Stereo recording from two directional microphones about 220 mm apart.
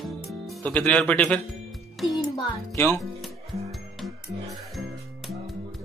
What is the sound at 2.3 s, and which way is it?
Speech, 10° left (ahead or behind).